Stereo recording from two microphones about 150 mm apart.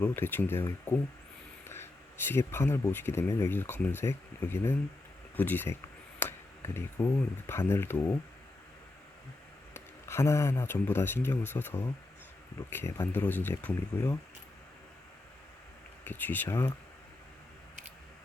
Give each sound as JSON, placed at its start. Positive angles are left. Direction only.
{"t": 0.0, "sound": "speech", "side_deg": 15}
{"t": 9.7, "sound": "speech", "side_deg": 15}
{"t": 16.0, "sound": "speech", "side_deg": 15}